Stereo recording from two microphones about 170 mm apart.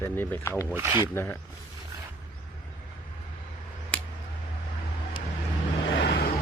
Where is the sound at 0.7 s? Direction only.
15° right (ahead or behind).